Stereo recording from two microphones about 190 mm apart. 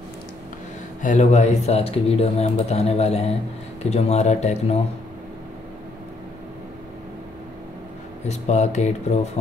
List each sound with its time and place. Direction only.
1.0 s speech: 40° left (ahead or behind)
8.3 s speech: 35° left (ahead or behind)